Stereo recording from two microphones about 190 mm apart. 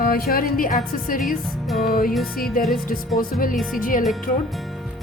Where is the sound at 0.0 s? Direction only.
50° left (ahead or behind).